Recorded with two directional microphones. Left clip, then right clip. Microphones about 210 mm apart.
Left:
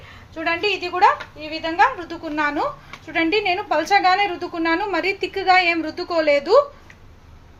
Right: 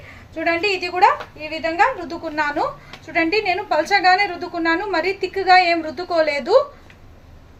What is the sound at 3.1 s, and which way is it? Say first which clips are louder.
A woman's voice: right 1 dB; 40° left (ahead or behind).